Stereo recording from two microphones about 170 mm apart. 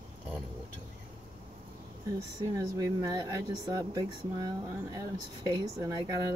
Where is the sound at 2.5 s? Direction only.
20° right (ahead or behind).